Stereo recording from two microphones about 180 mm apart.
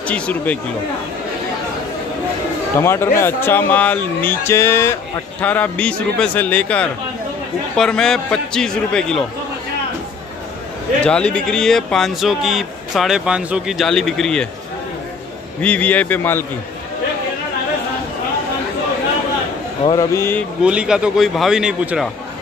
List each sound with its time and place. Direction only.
0.0 s speech: 10° left (ahead or behind)
2.7 s speech: 15° left (ahead or behind)
11.0 s speech: 5° left (ahead or behind)
15.6 s speech: 10° left (ahead or behind)
19.8 s speech: 25° left (ahead or behind)
20.2 s speech: 10° left (ahead or behind)
20.6 s speech: 5° right (ahead or behind)